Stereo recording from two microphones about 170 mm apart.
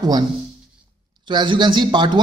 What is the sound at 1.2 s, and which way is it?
Speech, 25° right (ahead or behind).